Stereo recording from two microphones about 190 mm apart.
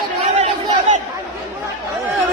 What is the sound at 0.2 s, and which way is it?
Chatter, 40° right (ahead or behind).